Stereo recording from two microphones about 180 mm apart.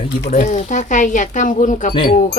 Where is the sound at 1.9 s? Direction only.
30° left (ahead or behind).